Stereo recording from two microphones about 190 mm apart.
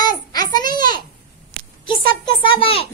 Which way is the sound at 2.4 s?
25° left (ahead or behind).